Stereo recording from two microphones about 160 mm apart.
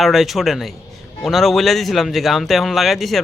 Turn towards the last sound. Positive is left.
turn(degrees=0)  # may be behind; listen again after turning